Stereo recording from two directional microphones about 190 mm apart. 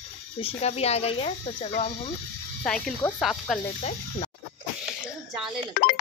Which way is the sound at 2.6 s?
5° left (ahead or behind).